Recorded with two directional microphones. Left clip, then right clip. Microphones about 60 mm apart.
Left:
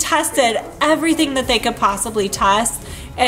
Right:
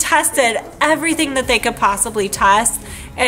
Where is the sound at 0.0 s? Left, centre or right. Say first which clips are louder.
Right 1 dB; right.